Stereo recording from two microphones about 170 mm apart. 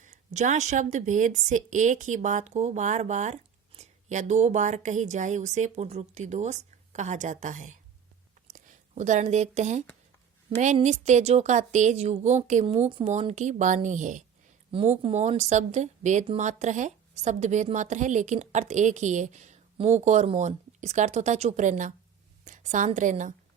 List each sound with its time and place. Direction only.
0.0 s speech: 45° right (ahead or behind)
14.7 s a woman's voice: 30° right (ahead or behind); by 23.3 s 45° right (ahead or behind)